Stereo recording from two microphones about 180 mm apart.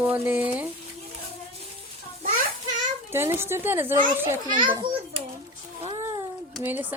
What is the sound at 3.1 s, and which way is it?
Speech, 15° right (ahead or behind).